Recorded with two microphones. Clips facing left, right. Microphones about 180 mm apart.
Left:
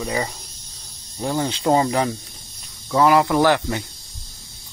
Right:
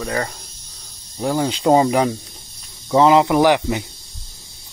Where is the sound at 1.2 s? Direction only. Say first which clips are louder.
Right 3 dB; 10° right (ahead or behind).